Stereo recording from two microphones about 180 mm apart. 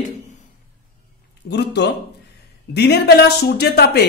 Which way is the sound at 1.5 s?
70° left (ahead or behind).